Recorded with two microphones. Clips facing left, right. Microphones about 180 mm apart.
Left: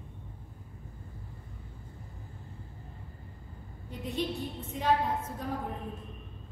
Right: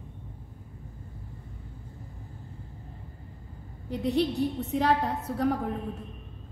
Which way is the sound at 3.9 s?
75° right (ahead or behind).